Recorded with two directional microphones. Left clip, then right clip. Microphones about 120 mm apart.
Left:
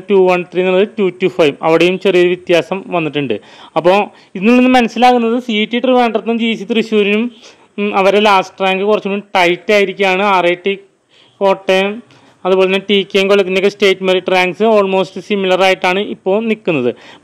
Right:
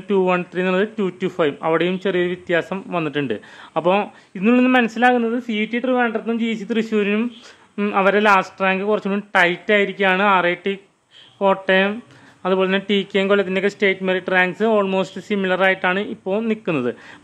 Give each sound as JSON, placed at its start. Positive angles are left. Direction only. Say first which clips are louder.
{"t": 0.1, "sound": "a man's voice", "louder": "left 8 dB", "side_deg": 25}
{"t": 2.9, "sound": "a man's voice", "louder": "left 6 dB", "side_deg": 30}
{"t": 6.6, "sound": "a man's voice", "louder": "left 8 dB", "side_deg": 35}